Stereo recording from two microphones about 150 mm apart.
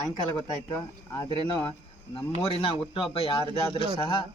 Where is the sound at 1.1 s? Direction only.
25° left (ahead or behind).